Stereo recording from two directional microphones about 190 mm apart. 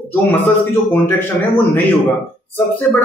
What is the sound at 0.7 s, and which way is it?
Speech, 10° left (ahead or behind).